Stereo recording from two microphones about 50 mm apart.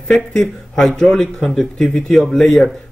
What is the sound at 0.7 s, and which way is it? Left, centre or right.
A man's voice, centre.